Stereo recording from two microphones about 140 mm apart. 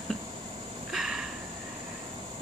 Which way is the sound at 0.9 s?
5° right (ahead or behind).